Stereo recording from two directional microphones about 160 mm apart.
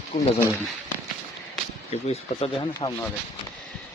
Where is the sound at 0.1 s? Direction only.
55° left (ahead or behind).